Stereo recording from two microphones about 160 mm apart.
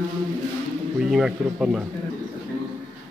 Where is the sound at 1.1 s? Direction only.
5° right (ahead or behind).